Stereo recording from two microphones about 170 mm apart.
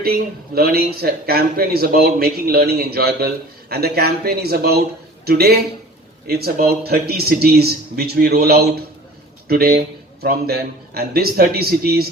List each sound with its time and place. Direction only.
0.0 s a man's voice: 65° right (ahead or behind)